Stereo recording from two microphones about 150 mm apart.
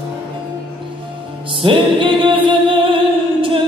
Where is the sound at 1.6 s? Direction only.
35° right (ahead or behind).